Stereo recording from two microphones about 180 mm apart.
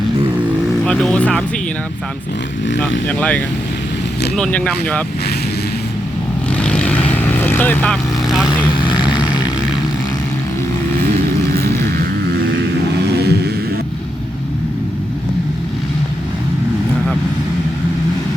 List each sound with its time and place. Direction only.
0.9 s speech: 5° left (ahead or behind)
3.1 s speech: 5° left (ahead or behind)
6.6 s vehicle: 5° left (ahead or behind)
8.9 s a sound: 25° left (ahead or behind)